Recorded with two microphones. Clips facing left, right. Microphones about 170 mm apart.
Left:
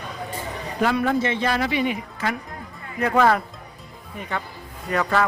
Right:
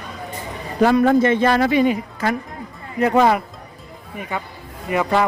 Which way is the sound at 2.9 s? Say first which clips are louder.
Right 3 dB; 20° right (ahead or behind).